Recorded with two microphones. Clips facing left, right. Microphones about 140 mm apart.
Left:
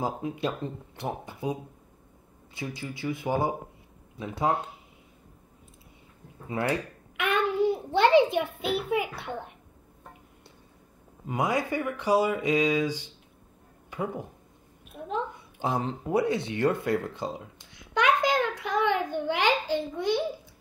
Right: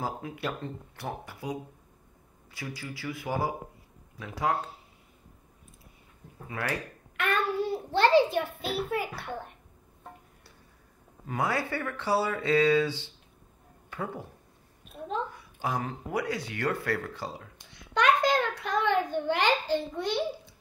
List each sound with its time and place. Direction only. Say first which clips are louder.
0.0 s speech: left 4 dB; 20° left (ahead or behind)
6.4 s a child's voice: left 5 dB; 25° left (ahead or behind)
11.2 s speech: left 3 dB; 20° left (ahead or behind)
14.9 s a sound: left 1 dB; 10° left (ahead or behind)
15.3 s a child's voice: left 3 dB; 25° left (ahead or behind)